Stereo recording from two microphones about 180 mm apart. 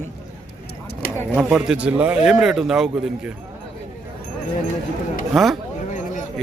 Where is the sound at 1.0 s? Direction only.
55° left (ahead or behind).